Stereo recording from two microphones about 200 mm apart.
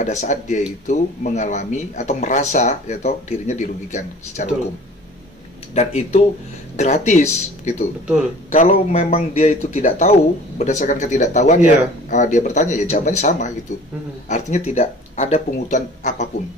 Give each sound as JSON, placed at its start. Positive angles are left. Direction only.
{"t": 0.0, "sound": "speech", "side_deg": 35}
{"t": 5.8, "sound": "speech", "side_deg": 30}